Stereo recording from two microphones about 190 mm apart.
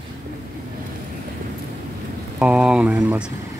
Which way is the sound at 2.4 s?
5° right (ahead or behind).